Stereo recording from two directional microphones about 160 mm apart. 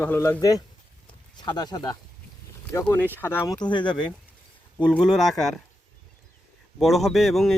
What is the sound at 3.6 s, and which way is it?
Speech, 30° left (ahead or behind).